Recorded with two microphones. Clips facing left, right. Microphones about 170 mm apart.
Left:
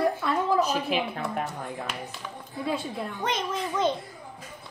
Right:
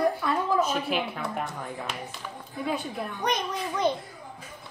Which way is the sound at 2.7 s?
25° left (ahead or behind).